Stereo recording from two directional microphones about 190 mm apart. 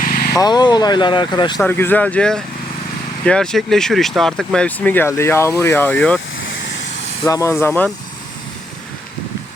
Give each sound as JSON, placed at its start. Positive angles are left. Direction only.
{"t": 0.0, "sound": "vehicle", "side_deg": 50}
{"t": 0.3, "sound": "speech", "side_deg": 20}
{"t": 1.6, "sound": "speech", "side_deg": 10}
{"t": 7.3, "sound": "speech", "side_deg": 15}